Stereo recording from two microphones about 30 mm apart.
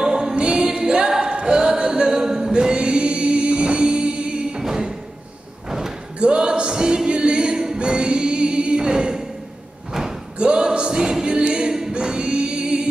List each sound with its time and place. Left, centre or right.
0.0 s a capella: right
0.6 s music: right
1.2 s singing: right
5.7 s slam: centre
6.1 s singing: right
7.1 s music: right
7.5 s choir: centre
7.8 s music: right
10.4 s a sound: right
11.0 s music: right